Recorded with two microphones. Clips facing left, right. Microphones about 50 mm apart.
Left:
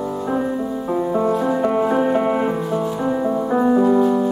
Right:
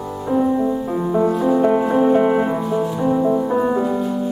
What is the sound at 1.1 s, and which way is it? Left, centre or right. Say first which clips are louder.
Music: right 4 dB; centre.